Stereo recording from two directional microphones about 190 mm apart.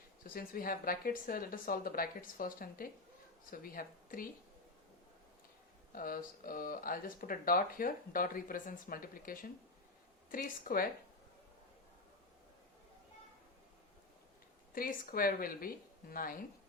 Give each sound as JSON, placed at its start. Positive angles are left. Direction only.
{"t": 0.3, "sound": "speech", "side_deg": 50}
{"t": 5.9, "sound": "speech", "side_deg": 50}
{"t": 14.7, "sound": "speech", "side_deg": 50}